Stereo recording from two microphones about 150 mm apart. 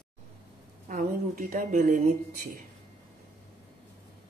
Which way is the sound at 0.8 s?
65° right (ahead or behind).